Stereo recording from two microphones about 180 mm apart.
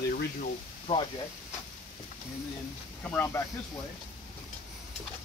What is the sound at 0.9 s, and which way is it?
Speech, 30° left (ahead or behind).